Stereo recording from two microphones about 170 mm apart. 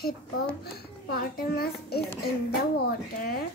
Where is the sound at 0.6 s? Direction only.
65° left (ahead or behind).